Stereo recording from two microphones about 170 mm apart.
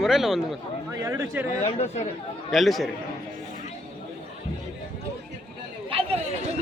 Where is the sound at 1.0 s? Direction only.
15° right (ahead or behind).